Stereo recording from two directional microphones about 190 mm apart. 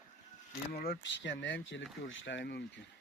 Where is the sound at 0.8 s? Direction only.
65° left (ahead or behind).